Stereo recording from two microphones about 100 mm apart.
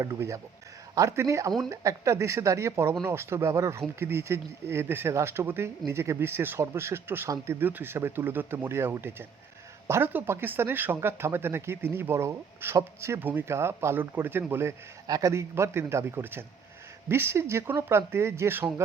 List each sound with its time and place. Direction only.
0.0 s speech: 30° right (ahead or behind)
15.0 s a man's voice: 40° right (ahead or behind)
15.3 s speech: 30° right (ahead or behind)